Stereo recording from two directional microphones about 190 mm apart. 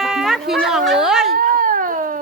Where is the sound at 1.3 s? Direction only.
45° right (ahead or behind).